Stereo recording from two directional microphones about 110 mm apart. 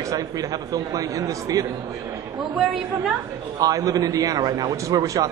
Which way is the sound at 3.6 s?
35° right (ahead or behind).